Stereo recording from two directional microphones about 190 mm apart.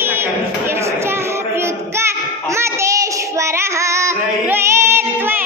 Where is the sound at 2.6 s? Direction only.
15° right (ahead or behind).